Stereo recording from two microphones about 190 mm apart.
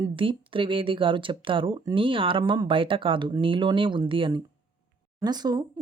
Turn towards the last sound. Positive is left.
turn(degrees=-20)  # may be behind; listen again after turning